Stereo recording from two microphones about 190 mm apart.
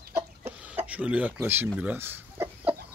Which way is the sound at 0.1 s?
10° right (ahead or behind).